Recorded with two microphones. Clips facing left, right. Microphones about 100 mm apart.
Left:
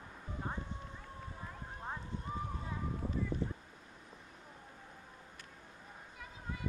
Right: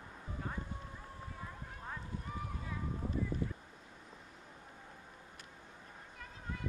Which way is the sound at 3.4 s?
30° left (ahead or behind).